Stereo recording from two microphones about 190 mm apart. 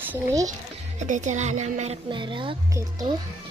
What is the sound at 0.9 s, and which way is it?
Speech, 40° right (ahead or behind).